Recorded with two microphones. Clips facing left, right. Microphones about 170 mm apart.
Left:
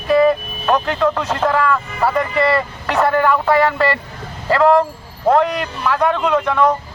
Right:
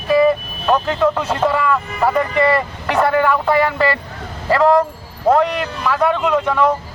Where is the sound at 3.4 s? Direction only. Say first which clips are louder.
Left 1 dB; 10° right (ahead or behind).